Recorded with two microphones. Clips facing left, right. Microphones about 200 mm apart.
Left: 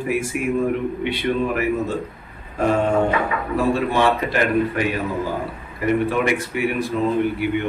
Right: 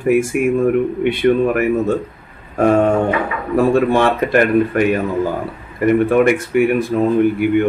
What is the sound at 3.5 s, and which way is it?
A man's voice, 50° right (ahead or behind).